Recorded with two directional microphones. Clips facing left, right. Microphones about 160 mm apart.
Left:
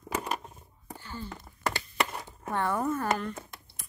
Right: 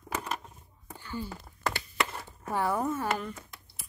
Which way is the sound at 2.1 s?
20° left (ahead or behind).